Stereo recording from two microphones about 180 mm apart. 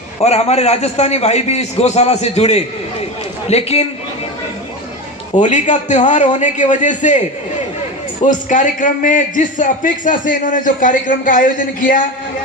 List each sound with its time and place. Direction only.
0.2 s a man's voice: 35° left (ahead or behind)
5.4 s a man's voice: 40° left (ahead or behind)
8.2 s a man's voice: 45° left (ahead or behind)